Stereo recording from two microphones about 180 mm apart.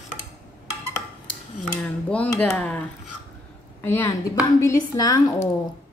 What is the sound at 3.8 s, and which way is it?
Speech, 15° left (ahead or behind).